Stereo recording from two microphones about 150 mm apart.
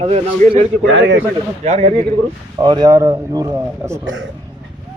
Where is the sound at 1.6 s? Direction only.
50° right (ahead or behind).